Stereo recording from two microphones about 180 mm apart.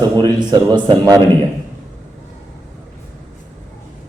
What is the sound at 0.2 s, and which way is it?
A man's voice, 25° right (ahead or behind).